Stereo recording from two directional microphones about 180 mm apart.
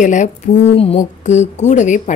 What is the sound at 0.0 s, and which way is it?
A woman's voice, 40° left (ahead or behind).